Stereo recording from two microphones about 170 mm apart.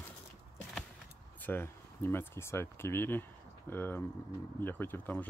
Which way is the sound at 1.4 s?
10° left (ahead or behind).